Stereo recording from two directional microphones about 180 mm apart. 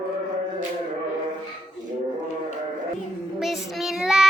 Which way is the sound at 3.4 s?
Centre (ahead or behind).